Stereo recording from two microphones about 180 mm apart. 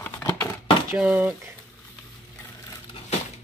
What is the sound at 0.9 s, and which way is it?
Speech, 5° right (ahead or behind).